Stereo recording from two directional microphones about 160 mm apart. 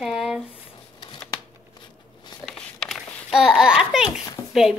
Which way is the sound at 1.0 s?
25° left (ahead or behind).